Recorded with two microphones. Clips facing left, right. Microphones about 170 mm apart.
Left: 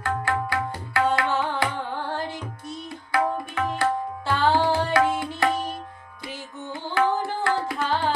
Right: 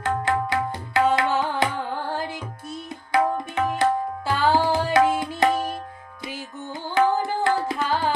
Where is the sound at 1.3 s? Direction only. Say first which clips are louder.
Right 2 dB; 10° right (ahead or behind).